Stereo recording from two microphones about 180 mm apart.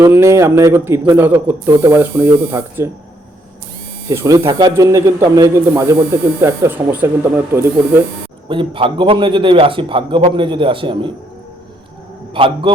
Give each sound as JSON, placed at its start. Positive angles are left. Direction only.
{"t": 0.0, "sound": "speech", "side_deg": -15}
{"t": 4.1, "sound": "a man's voice", "side_deg": -15}
{"t": 8.4, "sound": "a man's voice", "side_deg": -30}
{"t": 12.3, "sound": "a man's voice", "side_deg": -30}